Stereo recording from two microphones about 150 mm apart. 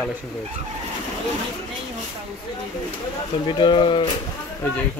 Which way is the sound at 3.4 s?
30° left (ahead or behind).